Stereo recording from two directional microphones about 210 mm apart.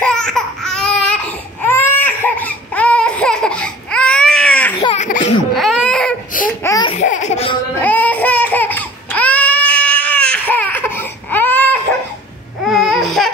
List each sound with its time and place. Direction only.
0.0 s laughter: 5° left (ahead or behind)
1.6 s baby cry: 10° left (ahead or behind)
4.7 s laughter: 30° left (ahead or behind)
5.5 s baby cry: centre (ahead or behind)
6.6 s laughter: 20° left (ahead or behind)
7.0 s laughter: 35° left (ahead or behind)
7.8 s baby cry: 10° left (ahead or behind)